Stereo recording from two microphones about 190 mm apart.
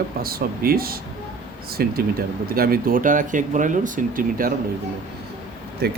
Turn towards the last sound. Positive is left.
turn(degrees=-55)  # may be behind; listen again after turning